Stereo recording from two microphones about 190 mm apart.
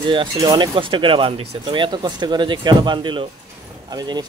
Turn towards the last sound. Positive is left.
turn(degrees=-25)  # may be behind; listen again after turning